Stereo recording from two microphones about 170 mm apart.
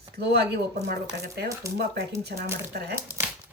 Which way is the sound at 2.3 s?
55° right (ahead or behind).